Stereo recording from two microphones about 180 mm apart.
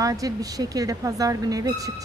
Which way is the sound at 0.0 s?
20° right (ahead or behind).